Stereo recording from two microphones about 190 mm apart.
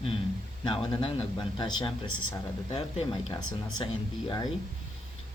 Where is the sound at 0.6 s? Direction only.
25° left (ahead or behind).